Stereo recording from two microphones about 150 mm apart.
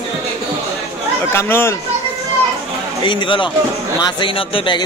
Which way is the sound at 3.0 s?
30° left (ahead or behind).